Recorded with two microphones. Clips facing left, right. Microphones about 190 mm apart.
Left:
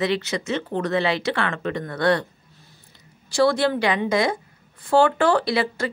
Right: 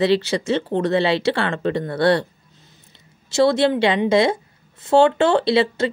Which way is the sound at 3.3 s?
25° right (ahead or behind).